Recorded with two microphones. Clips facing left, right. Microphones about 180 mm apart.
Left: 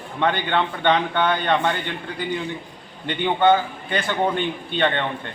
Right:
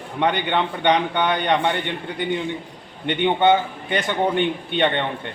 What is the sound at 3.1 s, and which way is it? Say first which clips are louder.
A man's voice: right 1 dB; 20° right (ahead or behind).